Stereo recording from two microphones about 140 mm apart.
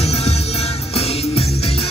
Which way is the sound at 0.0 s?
50° left (ahead or behind).